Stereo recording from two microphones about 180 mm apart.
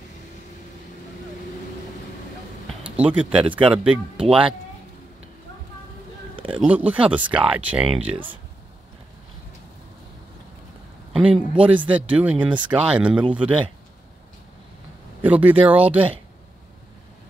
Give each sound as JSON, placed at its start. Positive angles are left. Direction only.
{"t": 3.0, "sound": "speech", "side_deg": -5}
{"t": 4.3, "sound": "speech", "side_deg": -30}
{"t": 6.3, "sound": "a sound", "side_deg": -30}
{"t": 6.6, "sound": "speech", "side_deg": -10}
{"t": 7.8, "sound": "speech", "side_deg": -30}
{"t": 11.1, "sound": "speech", "side_deg": -5}
{"t": 15.2, "sound": "speech", "side_deg": -10}